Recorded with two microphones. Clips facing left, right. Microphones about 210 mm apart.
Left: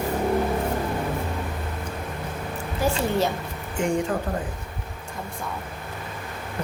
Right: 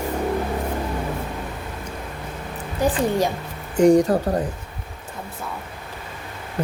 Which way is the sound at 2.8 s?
15° right (ahead or behind).